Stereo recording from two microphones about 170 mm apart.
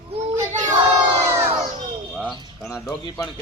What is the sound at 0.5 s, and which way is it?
Child singing, 45° right (ahead or behind).